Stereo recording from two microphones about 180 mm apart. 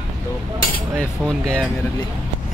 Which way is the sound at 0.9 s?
Centre (ahead or behind).